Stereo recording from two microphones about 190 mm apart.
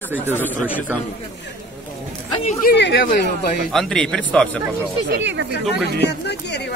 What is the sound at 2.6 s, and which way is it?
Speech, 60° left (ahead or behind).